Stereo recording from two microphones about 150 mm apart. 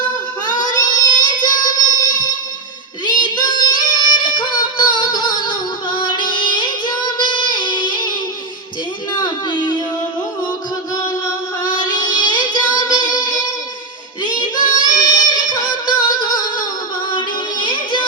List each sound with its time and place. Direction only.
0.4 s a sound: 25° left (ahead or behind)
1.1 s child singing: 30° left (ahead or behind)
3.2 s female singing: 30° left (ahead or behind)
9.2 s a sound: 30° left (ahead or behind)
11.6 s music: 25° left (ahead or behind)
14.3 s child singing: 30° left (ahead or behind)
15.0 s music: 30° left (ahead or behind)